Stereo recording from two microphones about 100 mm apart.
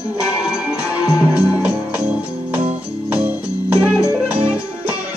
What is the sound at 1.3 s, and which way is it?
Music, 10° right (ahead or behind).